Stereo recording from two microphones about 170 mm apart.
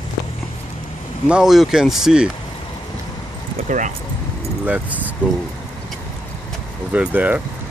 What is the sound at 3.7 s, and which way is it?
Speech, 45° right (ahead or behind).